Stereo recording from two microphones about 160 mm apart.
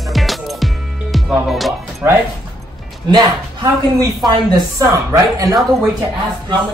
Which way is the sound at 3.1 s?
25° right (ahead or behind).